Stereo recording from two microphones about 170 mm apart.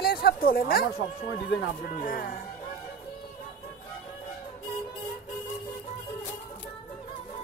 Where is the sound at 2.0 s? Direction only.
55° left (ahead or behind).